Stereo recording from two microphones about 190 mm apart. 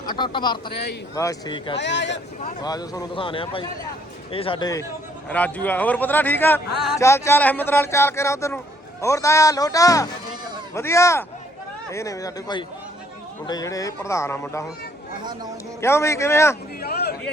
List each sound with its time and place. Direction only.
0.0 s speech: 20° left (ahead or behind)
1.7 s speech: 70° left (ahead or behind)
2.6 s speech: 20° left (ahead or behind)
5.3 s a man's voice: 10° left (ahead or behind)
15.8 s a man's voice: 15° left (ahead or behind)
16.8 s a sound: 55° left (ahead or behind)